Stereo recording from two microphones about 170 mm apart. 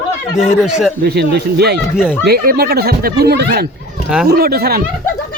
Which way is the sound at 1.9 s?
5° right (ahead or behind).